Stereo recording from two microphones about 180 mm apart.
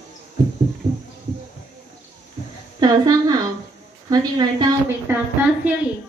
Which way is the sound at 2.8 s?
20° right (ahead or behind).